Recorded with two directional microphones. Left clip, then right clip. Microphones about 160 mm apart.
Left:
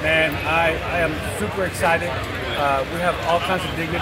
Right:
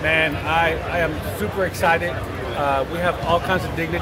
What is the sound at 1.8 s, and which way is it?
Speech, 25° right (ahead or behind).